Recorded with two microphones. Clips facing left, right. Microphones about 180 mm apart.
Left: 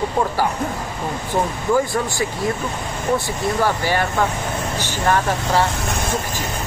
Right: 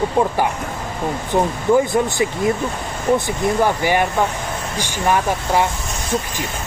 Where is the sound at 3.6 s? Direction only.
15° right (ahead or behind).